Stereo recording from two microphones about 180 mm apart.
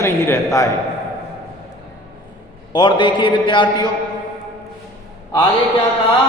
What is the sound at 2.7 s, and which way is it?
A man's voice, 25° left (ahead or behind).